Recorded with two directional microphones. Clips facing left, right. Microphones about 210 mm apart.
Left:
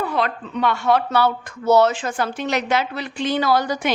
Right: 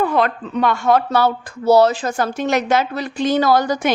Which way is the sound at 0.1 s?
50° right (ahead or behind).